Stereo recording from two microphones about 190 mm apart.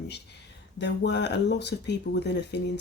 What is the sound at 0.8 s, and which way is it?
Speech, 65° left (ahead or behind).